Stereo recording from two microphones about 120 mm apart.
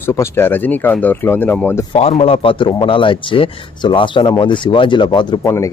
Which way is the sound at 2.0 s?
55° left (ahead or behind).